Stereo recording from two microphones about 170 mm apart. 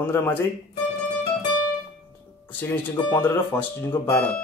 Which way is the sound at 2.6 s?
10° left (ahead or behind).